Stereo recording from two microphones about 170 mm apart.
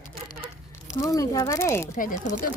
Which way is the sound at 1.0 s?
20° left (ahead or behind).